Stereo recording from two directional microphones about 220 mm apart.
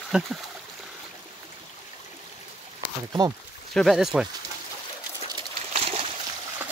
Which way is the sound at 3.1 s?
15° right (ahead or behind).